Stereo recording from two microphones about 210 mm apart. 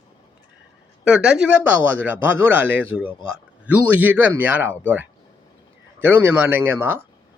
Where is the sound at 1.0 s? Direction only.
5° right (ahead or behind).